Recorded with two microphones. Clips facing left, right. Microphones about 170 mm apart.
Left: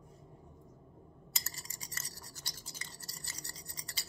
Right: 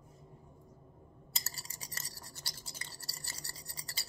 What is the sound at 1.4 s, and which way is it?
Toothbrush, 35° right (ahead or behind).